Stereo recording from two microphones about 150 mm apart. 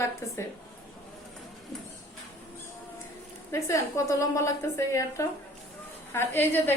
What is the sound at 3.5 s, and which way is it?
A woman's voice, 20° left (ahead or behind).